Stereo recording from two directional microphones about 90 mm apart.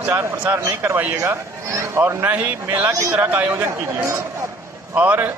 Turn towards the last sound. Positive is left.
turn(degrees=-15)  # may be behind; listen again after turning